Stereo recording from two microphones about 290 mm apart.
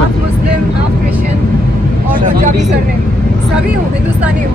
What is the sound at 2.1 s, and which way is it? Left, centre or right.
Speech, right.